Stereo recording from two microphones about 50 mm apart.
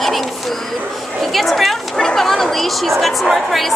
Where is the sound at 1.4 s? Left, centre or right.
Centre.